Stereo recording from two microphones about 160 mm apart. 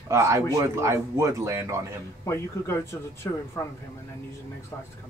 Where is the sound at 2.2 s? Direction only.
15° left (ahead or behind).